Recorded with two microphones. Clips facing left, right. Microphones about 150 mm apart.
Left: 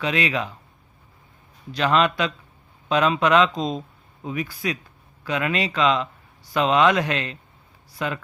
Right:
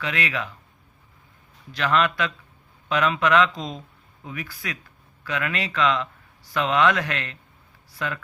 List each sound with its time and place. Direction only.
0.0 s speech: 20° left (ahead or behind)
1.7 s speech: 20° left (ahead or behind)